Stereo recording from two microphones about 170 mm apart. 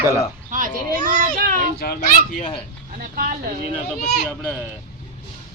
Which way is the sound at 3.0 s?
55° right (ahead or behind).